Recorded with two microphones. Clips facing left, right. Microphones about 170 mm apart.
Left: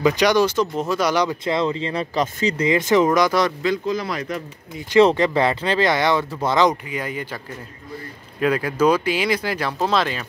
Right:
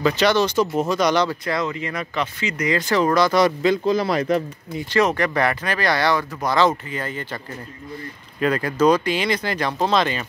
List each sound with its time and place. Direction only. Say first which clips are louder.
0.0 s speech: left 1 dB; 15° left (ahead or behind)
0.6 s speech: right 1 dB; centre (ahead or behind)
1.4 s speech: left 3 dB; 25° left (ahead or behind)
3.6 s speech: right 3 dB; 30° right (ahead or behind)
5.0 s speech: left 2 dB; 20° left (ahead or behind)
6.9 s speech: left 1 dB; 10° left (ahead or behind)
8.4 s speech: even; 5° left (ahead or behind)